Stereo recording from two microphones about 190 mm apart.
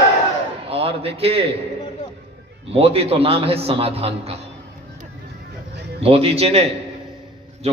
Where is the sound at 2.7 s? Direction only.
30° right (ahead or behind).